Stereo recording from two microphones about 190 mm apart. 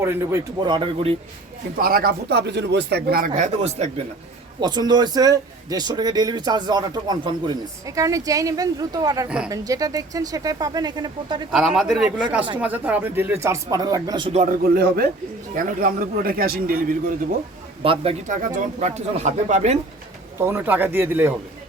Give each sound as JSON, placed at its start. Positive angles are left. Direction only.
{"t": 0.0, "sound": "speech", "side_deg": -15}
{"t": 1.8, "sound": "speech", "side_deg": -50}
{"t": 4.6, "sound": "speech", "side_deg": -20}
{"t": 11.5, "sound": "speech", "side_deg": 0}
{"t": 14.4, "sound": "speech", "side_deg": -50}
{"t": 17.8, "sound": "speech", "side_deg": -30}
{"t": 20.4, "sound": "speech", "side_deg": -10}